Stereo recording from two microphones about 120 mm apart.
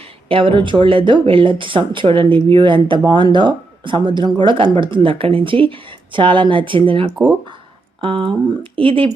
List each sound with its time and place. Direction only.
0.3 s speech: 45° right (ahead or behind)